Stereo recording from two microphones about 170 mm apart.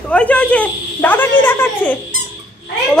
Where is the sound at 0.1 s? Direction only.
5° left (ahead or behind).